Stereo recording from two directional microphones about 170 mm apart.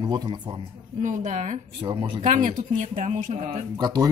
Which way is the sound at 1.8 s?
30° right (ahead or behind).